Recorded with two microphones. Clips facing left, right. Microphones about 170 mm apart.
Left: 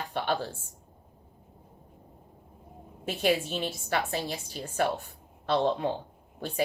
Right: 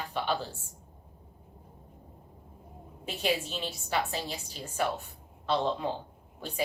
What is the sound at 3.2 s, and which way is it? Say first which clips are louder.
Speech: left 4 dB; 50° left (ahead or behind).